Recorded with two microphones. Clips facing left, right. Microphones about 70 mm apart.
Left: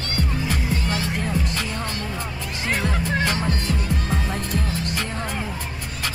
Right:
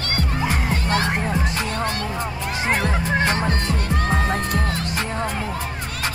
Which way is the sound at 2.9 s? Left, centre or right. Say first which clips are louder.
Right 3 dB; right.